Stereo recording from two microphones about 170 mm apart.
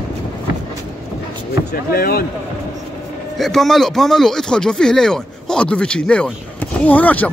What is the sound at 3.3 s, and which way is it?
Speech, centre (ahead or behind).